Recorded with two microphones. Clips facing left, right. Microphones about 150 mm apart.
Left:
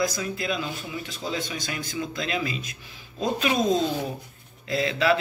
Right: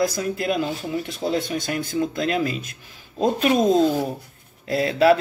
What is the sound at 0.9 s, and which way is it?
Speech, 60° right (ahead or behind).